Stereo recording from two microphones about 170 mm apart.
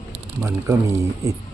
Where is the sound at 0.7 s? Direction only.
15° right (ahead or behind).